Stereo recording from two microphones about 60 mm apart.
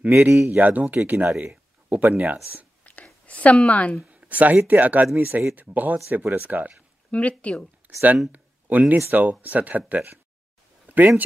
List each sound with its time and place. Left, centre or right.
0.1 s speech: right
0.6 s speech: right
2.8 s whispering: left
3.3 s a woman's voice: left
4.1 s speech: right
7.1 s a woman's voice: left
8.3 s a sound: right
9.1 s speech: right